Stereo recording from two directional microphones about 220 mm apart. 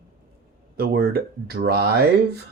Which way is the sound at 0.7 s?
45° right (ahead or behind).